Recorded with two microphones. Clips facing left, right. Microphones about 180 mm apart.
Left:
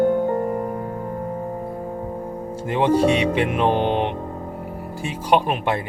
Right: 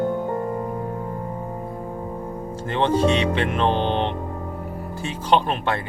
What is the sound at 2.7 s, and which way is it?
Speech, 10° left (ahead or behind).